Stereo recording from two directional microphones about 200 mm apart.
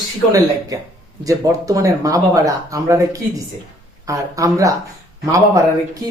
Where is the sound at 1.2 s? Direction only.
15° right (ahead or behind).